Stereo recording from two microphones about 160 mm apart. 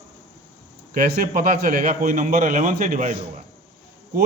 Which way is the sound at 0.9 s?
60° right (ahead or behind).